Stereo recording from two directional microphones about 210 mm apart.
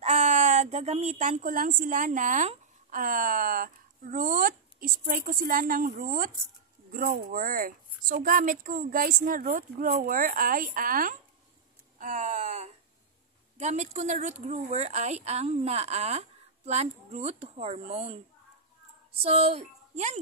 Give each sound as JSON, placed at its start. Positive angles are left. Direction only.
{"t": 0.0, "sound": "a woman's voice", "side_deg": -35}
{"t": 19.2, "sound": "speech", "side_deg": -30}